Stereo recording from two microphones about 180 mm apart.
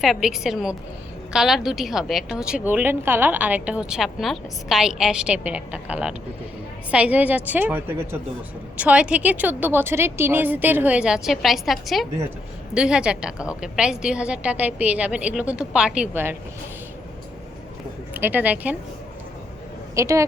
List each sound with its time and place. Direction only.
0.0 s a woman's voice: centre (ahead or behind)
18.1 s a woman's voice: 10° right (ahead or behind)
20.0 s a woman's voice: 15° right (ahead or behind)